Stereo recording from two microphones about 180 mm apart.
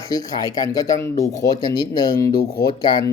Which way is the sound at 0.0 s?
20° left (ahead or behind).